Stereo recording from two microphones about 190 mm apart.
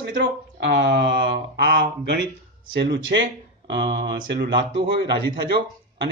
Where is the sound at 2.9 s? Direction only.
75° right (ahead or behind).